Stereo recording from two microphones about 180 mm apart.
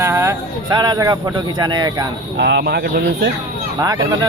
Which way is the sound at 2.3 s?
70° right (ahead or behind).